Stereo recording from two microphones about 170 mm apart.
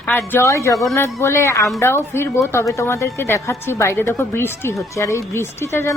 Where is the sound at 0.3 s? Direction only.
15° left (ahead or behind).